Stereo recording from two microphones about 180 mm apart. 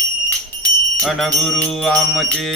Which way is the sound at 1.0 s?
Centre (ahead or behind).